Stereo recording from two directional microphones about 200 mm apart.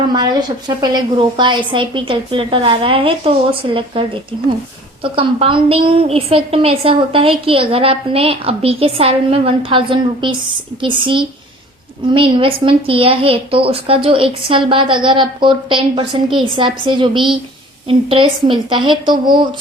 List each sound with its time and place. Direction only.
0.1 s a woman's voice: 20° right (ahead or behind)